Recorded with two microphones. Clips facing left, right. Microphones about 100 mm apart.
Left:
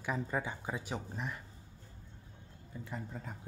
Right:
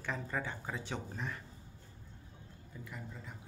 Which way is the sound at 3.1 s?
45° left (ahead or behind).